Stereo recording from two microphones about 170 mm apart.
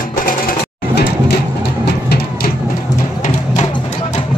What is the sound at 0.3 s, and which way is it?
Sewing machine, 60° left (ahead or behind).